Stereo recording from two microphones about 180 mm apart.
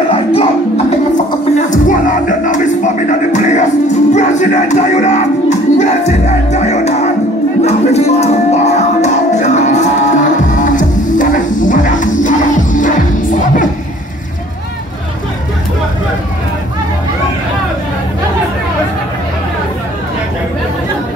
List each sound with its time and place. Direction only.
0.1 s music: 30° left (ahead or behind)
1.7 s music: 45° left (ahead or behind)